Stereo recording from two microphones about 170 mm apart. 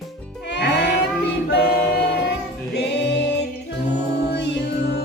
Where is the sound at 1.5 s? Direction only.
70° left (ahead or behind).